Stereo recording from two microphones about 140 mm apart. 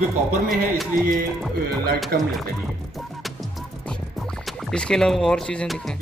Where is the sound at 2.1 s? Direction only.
90° right.